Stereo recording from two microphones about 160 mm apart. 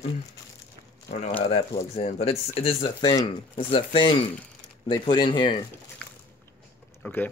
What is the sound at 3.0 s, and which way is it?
Speech, 25° left (ahead or behind).